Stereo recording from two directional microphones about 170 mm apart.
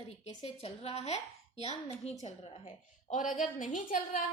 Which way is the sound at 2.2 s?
35° left (ahead or behind).